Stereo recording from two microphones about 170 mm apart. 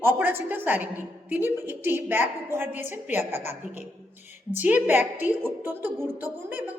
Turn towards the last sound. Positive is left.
turn(degrees=-10)  # may be behind; listen again after turning